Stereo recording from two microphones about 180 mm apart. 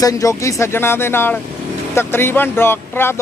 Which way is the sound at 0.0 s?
20° left (ahead or behind).